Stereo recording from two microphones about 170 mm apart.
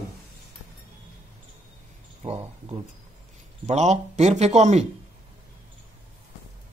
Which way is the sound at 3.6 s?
40° right (ahead or behind).